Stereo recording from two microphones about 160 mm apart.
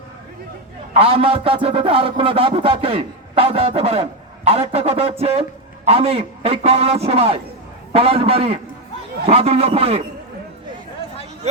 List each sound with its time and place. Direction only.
0.9 s a man's voice: 35° right (ahead or behind)